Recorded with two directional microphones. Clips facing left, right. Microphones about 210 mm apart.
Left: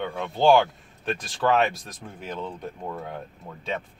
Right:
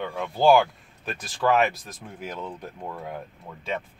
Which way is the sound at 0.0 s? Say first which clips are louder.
Even; 5° right (ahead or behind).